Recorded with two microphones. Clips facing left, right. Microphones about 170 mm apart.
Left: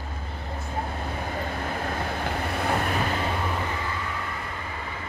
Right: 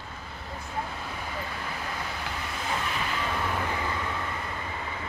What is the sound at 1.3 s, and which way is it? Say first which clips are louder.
Vehicle: left 6 dB; 50° left (ahead or behind).